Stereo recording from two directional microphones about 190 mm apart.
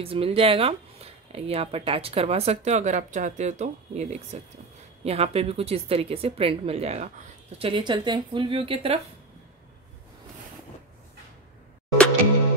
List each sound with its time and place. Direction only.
0.0 s speech: 30° right (ahead or behind)